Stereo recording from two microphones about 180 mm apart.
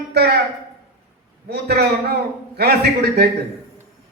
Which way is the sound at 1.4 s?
65° right (ahead or behind).